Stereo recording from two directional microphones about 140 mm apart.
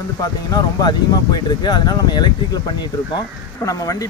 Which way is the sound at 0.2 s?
25° left (ahead or behind).